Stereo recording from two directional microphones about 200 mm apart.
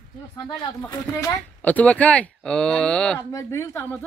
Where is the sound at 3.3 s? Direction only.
15° left (ahead or behind).